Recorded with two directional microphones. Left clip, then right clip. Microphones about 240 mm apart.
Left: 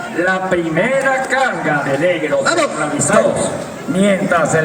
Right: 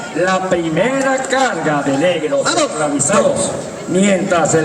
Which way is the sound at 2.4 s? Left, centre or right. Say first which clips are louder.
Left 1 dB; right.